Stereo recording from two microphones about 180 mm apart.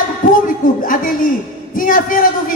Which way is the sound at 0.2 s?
50° left (ahead or behind).